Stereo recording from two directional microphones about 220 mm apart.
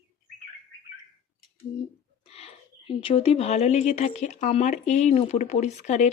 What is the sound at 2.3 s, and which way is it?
A woman's voice, 25° left (ahead or behind).